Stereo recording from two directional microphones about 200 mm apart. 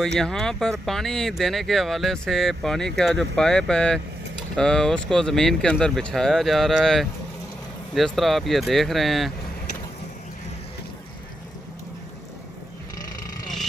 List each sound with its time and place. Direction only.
0.0 s speech: 5° left (ahead or behind)